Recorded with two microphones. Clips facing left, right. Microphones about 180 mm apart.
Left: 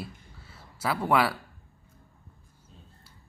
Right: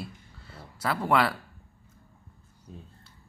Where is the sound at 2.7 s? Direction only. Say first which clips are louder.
Right 10 dB; 55° right (ahead or behind).